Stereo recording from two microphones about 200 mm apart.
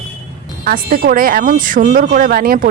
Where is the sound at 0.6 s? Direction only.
45° right (ahead or behind).